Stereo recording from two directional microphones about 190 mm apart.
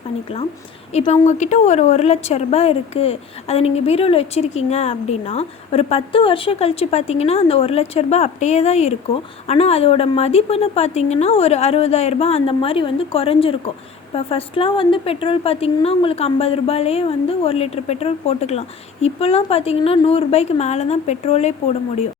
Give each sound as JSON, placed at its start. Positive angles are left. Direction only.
{"t": 0.9, "sound": "a woman's voice", "side_deg": 35}